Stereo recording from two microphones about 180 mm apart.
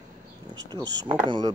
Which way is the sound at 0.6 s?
25° right (ahead or behind).